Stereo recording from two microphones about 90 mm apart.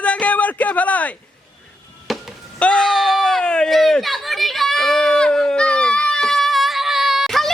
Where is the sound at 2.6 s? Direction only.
10° left (ahead or behind).